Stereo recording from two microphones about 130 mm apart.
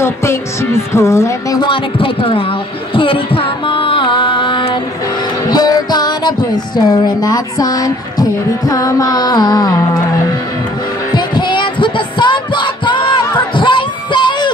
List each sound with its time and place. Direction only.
0.0 s speech: 20° left (ahead or behind)
1.6 s speech: 40° left (ahead or behind)
2.9 s music: 40° left (ahead or behind)
6.8 s speech: 30° left (ahead or behind)
11.1 s heart sounds: 35° left (ahead or behind)
13.6 s a sound: 40° left (ahead or behind)